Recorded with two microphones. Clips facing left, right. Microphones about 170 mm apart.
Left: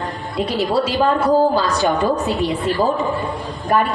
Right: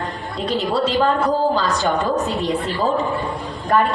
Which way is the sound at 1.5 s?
15° left (ahead or behind).